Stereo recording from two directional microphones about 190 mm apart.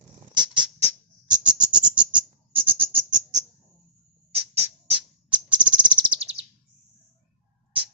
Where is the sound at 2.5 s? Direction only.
30° right (ahead or behind).